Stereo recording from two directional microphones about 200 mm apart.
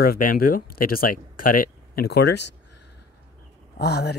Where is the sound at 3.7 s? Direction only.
55° left (ahead or behind).